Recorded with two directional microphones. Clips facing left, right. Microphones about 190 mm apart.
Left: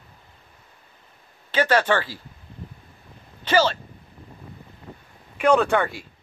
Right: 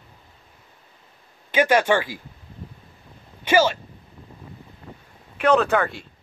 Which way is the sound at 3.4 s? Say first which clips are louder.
Right 2 dB; 10° right (ahead or behind).